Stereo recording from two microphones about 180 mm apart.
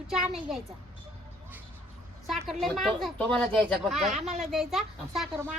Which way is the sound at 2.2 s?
Centre (ahead or behind).